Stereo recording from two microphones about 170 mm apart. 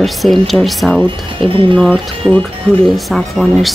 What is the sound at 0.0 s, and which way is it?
Speech, centre (ahead or behind).